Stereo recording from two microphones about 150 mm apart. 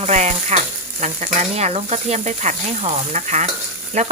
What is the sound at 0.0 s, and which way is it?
Sizzle, 50° right (ahead or behind).